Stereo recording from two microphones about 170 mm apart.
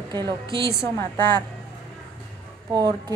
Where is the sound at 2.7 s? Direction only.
25° right (ahead or behind).